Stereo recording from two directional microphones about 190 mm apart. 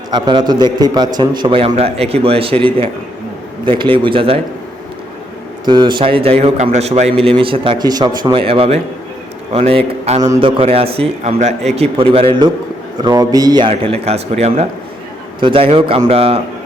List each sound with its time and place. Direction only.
0.1 s a man's voice: 25° right (ahead or behind)
5.6 s a man's voice: 25° right (ahead or behind)
13.0 s a man's voice: 20° right (ahead or behind)